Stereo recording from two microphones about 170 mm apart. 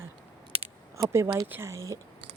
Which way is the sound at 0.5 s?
35° right (ahead or behind).